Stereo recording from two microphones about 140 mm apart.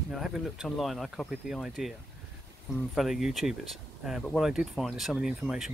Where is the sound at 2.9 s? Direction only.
Centre (ahead or behind).